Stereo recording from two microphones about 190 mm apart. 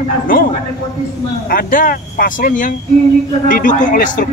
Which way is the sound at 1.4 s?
50° left (ahead or behind).